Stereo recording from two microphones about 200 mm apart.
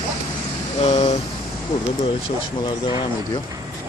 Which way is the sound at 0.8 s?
30° left (ahead or behind).